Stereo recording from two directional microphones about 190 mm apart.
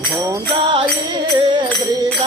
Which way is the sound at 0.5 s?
25° right (ahead or behind).